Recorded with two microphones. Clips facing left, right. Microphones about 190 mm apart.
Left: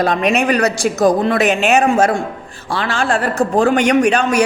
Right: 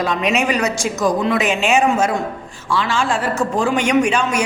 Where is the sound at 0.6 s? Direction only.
35° left (ahead or behind).